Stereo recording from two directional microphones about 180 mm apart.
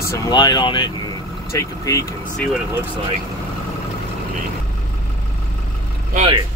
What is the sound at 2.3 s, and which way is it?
Speech, 5° left (ahead or behind).